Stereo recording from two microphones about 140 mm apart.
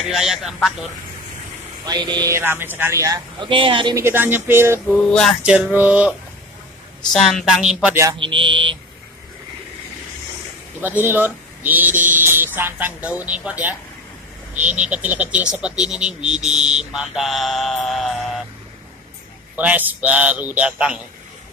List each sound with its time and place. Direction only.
0.0 s a sound: centre (ahead or behind)
1.9 s speech: 30° right (ahead or behind)
2.3 s speech: 15° right (ahead or behind)
3.3 s speech: 35° right (ahead or behind)
3.9 s speech: 15° right (ahead or behind)
4.9 s a sound: 5° left (ahead or behind)
5.4 s speech: 5° right (ahead or behind)
7.1 s a sound: centre (ahead or behind)
7.9 s speech: 20° right (ahead or behind)
8.2 s speech: 35° right (ahead or behind)
10.8 s speech: 15° right (ahead or behind)
14.8 s speech: 10° right (ahead or behind)
15.9 s a sound: 5° right (ahead or behind)
19.5 s speech: 10° right (ahead or behind)